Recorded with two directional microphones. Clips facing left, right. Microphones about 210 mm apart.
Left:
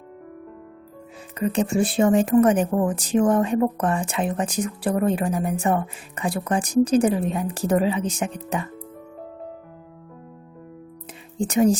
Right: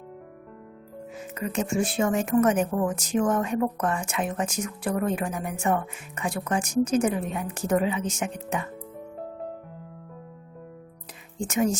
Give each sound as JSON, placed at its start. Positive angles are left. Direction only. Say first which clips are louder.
{"t": 1.4, "sound": "speech", "louder": "left 5 dB", "side_deg": 35}
{"t": 11.3, "sound": "speech", "louder": "left 6 dB", "side_deg": 35}